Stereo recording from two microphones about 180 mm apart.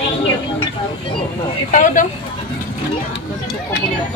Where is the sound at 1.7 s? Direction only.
45° left (ahead or behind).